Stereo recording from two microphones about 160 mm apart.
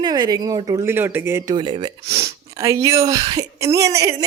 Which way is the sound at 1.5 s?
30° right (ahead or behind).